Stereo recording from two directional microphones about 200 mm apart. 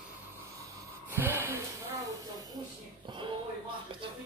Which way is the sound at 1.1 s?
10° right (ahead or behind).